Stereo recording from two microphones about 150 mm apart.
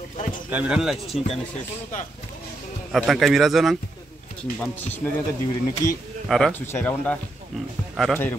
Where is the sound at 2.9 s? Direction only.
Centre (ahead or behind).